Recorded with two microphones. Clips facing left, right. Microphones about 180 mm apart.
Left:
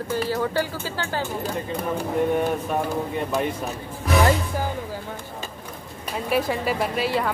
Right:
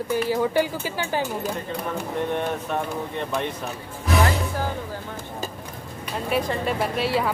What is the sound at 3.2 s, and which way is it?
Speech, 10° left (ahead or behind).